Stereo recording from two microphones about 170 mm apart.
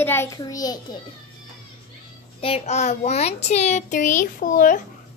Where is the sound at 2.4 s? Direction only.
40° left (ahead or behind).